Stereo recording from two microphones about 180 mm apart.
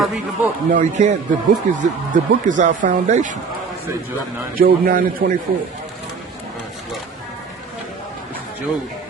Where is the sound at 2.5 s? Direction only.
45° right (ahead or behind).